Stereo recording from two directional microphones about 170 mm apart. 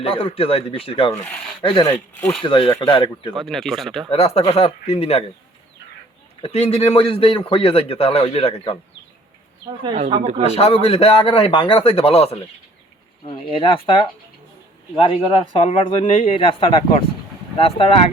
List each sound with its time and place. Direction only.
0.0 s a man's voice: 35° left (ahead or behind)
3.3 s speech: centre (ahead or behind)
4.1 s a man's voice: 35° left (ahead or behind)
6.4 s a man's voice: 35° left (ahead or behind)
10.1 s speech: 35° right (ahead or behind)
10.6 s a man's voice: 35° left (ahead or behind)